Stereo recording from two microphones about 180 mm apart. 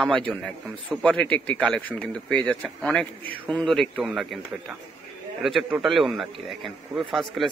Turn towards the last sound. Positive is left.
turn(degrees=0)  # may be behind; listen again after turning